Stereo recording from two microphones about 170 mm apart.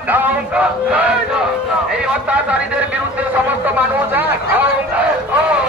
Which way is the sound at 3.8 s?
10° right (ahead or behind).